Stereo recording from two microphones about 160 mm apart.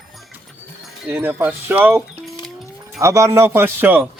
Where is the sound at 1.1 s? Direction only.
15° right (ahead or behind).